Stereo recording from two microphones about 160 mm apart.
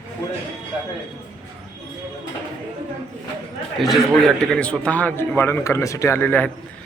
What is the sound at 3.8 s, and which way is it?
A man's voice, centre (ahead or behind).